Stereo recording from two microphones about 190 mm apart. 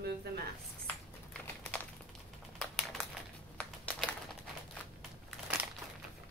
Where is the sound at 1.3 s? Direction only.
5° left (ahead or behind).